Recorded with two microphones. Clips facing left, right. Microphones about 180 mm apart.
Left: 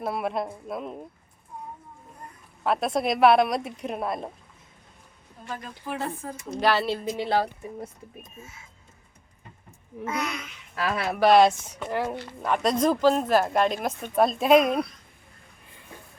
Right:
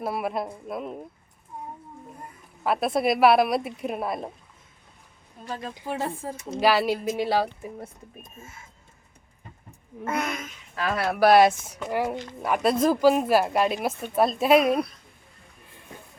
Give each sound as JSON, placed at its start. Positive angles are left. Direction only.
{"t": 0.0, "sound": "speech", "side_deg": -5}
{"t": 2.6, "sound": "speech", "side_deg": -5}
{"t": 5.9, "sound": "speech", "side_deg": -30}
{"t": 6.6, "sound": "a woman's voice", "side_deg": -10}
{"t": 8.2, "sound": "a child's voice", "side_deg": -50}
{"t": 10.0, "sound": "a child's voice", "side_deg": -55}
{"t": 10.9, "sound": "a woman's voice", "side_deg": -5}
{"t": 12.4, "sound": "speech", "side_deg": -5}